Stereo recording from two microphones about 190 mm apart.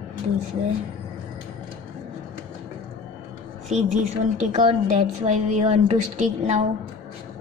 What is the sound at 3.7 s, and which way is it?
A woman's voice, 35° right (ahead or behind).